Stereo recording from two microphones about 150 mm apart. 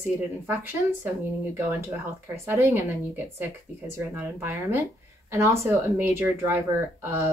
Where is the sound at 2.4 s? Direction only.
15° right (ahead or behind).